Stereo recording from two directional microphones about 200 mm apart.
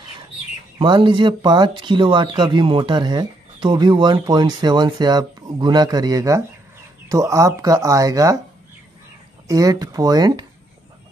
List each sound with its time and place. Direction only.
0.7 s speech: 25° right (ahead or behind)
9.5 s speech: 20° right (ahead or behind)